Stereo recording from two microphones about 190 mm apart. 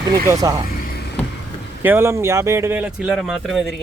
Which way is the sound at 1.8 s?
10° right (ahead or behind).